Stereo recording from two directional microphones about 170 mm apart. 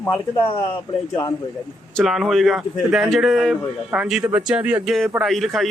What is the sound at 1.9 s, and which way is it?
A man's voice, centre (ahead or behind).